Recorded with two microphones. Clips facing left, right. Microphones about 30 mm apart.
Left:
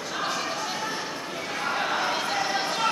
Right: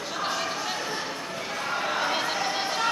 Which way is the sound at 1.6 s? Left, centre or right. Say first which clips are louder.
Left 1 dB; centre.